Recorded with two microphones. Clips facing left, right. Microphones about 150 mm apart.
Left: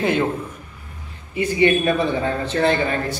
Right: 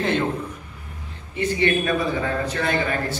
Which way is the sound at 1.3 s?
10° left (ahead or behind).